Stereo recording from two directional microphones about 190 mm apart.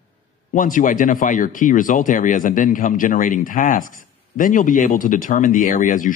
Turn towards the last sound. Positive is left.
turn(degrees=45)  # may be behind; listen again after turning